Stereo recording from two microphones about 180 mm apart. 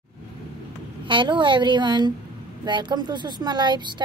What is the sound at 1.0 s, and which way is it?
Speech, 25° right (ahead or behind).